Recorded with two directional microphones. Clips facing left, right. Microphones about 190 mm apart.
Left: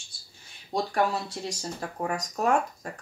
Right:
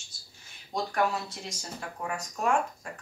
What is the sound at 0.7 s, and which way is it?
Speech, 30° left (ahead or behind).